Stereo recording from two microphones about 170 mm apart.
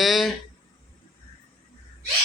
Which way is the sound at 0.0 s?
Centre (ahead or behind).